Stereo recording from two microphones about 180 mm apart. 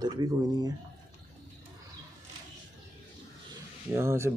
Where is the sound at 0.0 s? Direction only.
25° right (ahead or behind).